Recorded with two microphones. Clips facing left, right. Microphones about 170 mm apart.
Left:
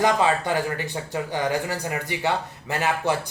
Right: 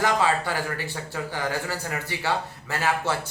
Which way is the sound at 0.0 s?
20° left (ahead or behind).